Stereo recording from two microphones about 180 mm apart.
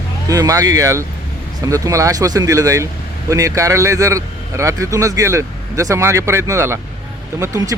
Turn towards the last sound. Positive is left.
turn(degrees=-15)  # may be behind; listen again after turning